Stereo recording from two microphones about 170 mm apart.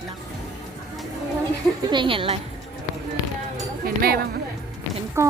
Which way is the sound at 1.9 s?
30° right (ahead or behind).